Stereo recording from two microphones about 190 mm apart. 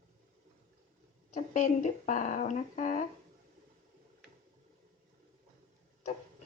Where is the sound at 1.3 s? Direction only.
40° left (ahead or behind).